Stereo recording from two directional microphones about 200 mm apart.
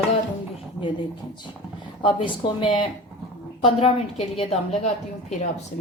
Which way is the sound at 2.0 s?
25° left (ahead or behind).